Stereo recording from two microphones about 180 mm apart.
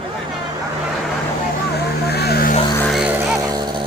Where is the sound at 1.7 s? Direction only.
65° left (ahead or behind).